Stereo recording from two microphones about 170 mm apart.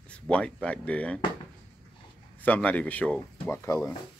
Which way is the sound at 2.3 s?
10° left (ahead or behind).